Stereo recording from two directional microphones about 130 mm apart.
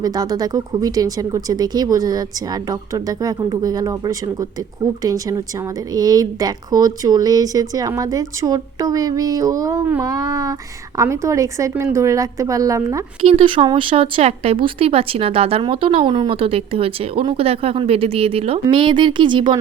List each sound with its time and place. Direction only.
0.0 s speech: 30° right (ahead or behind)
13.2 s speech: 45° right (ahead or behind)